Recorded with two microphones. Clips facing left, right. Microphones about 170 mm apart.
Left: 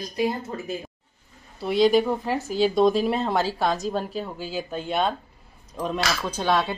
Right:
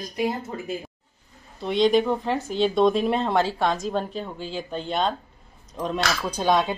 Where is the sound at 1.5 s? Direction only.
5° left (ahead or behind).